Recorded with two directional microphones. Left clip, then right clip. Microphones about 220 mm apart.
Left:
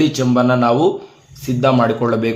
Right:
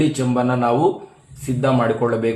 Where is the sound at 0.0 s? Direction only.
40° left (ahead or behind).